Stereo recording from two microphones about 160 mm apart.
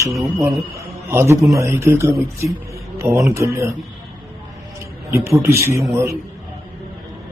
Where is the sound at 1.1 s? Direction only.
15° right (ahead or behind).